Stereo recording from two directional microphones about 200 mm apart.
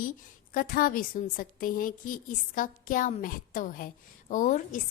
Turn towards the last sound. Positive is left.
turn(degrees=40)  # may be behind; listen again after turning